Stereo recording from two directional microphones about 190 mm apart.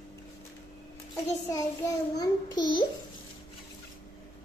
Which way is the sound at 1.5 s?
20° left (ahead or behind).